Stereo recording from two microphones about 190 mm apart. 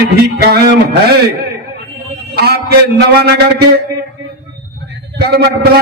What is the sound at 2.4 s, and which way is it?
A man's voice, 55° right (ahead or behind).